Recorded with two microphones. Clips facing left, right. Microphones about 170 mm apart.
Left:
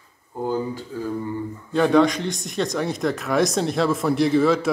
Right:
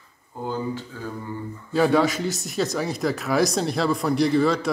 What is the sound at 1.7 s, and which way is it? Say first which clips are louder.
Speech: left 2 dB; 5° right (ahead or behind).